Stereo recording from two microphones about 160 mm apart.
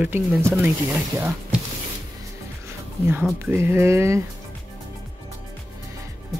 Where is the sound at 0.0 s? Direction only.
15° right (ahead or behind).